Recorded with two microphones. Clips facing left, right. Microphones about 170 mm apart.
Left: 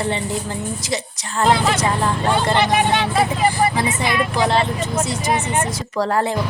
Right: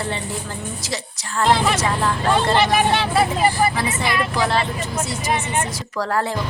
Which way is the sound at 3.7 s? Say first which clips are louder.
Left 2 dB; 20° left (ahead or behind).